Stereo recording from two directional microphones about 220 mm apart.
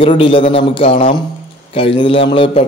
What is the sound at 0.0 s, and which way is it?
A man's voice, 25° left (ahead or behind).